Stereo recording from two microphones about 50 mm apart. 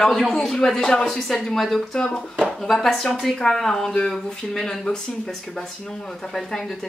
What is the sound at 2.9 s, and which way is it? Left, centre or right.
Speech, centre.